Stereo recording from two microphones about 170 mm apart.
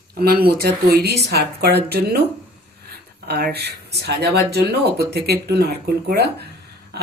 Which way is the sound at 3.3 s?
70° right (ahead or behind).